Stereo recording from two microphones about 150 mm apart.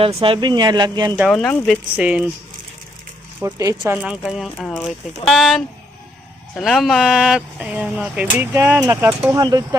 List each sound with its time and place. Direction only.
0.0 s speech: 40° right (ahead or behind)
1.1 s speech: centre (ahead or behind)
2.0 s speech: 5° right (ahead or behind)
3.4 s speech: 20° right (ahead or behind)
3.9 s speech: 5° right (ahead or behind); by 9.6 s 25° right (ahead or behind)